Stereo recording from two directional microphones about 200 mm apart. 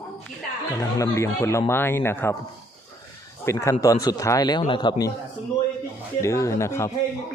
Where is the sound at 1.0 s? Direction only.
15° left (ahead or behind).